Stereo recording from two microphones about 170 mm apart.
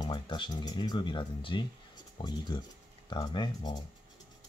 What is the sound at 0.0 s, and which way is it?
Speech, 25° left (ahead or behind).